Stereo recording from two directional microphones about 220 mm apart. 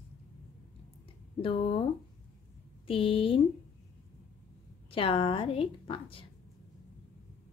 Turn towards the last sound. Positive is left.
turn(degrees=25)  # may be behind; listen again after turning